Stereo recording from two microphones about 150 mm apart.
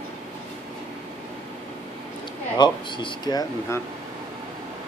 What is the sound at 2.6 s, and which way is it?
Speech, 30° left (ahead or behind).